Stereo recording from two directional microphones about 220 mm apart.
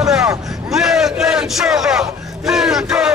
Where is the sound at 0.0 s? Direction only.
Centre (ahead or behind).